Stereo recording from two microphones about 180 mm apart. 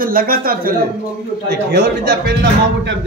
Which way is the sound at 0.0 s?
55° right (ahead or behind).